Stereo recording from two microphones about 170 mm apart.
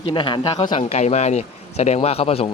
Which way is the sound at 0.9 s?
40° left (ahead or behind).